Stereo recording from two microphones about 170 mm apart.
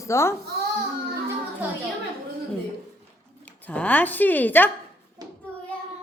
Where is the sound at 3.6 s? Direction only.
10° left (ahead or behind).